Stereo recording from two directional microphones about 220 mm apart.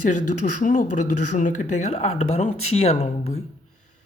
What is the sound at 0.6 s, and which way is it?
Speech, 35° left (ahead or behind).